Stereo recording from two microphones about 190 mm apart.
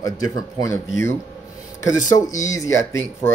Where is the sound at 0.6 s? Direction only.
15° left (ahead or behind).